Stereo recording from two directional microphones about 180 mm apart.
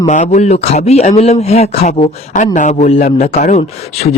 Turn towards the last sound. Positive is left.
turn(degrees=40)  # may be behind; listen again after turning